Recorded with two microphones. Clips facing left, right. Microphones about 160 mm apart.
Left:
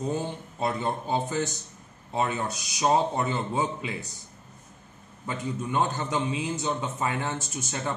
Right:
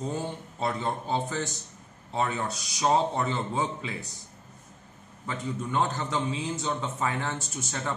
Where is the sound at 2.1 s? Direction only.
15° left (ahead or behind).